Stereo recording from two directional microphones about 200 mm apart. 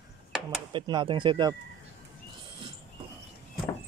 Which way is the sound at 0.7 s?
25° right (ahead or behind).